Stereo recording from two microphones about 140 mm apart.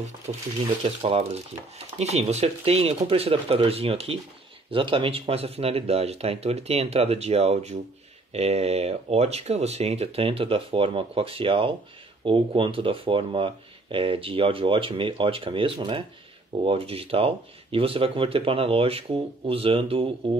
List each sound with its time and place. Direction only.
0.3 s speech: 55° right (ahead or behind)